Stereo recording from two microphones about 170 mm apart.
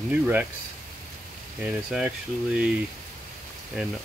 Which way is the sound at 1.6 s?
5° right (ahead or behind).